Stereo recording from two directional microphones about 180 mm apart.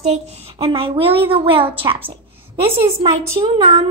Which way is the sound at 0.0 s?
35° right (ahead or behind).